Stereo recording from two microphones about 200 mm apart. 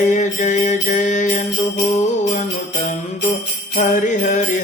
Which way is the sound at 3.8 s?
40° left (ahead or behind).